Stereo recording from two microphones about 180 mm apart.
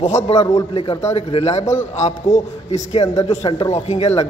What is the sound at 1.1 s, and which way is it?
A man's voice, 35° left (ahead or behind).